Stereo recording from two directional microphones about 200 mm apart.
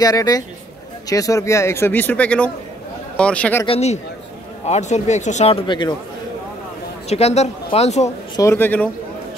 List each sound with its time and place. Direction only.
0.0 s speech: 20° left (ahead or behind)
3.6 s speech: 30° left (ahead or behind)
7.1 s speech: 30° left (ahead or behind)
8.4 s speech: 10° left (ahead or behind)